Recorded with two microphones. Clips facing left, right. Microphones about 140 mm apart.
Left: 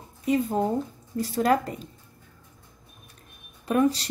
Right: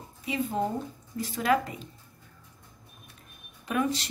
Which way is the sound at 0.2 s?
45° left (ahead or behind).